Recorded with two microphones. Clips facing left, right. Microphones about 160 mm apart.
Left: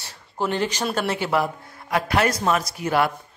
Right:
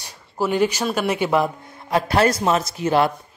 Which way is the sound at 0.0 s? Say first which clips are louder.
Right 3 dB; 10° right (ahead or behind).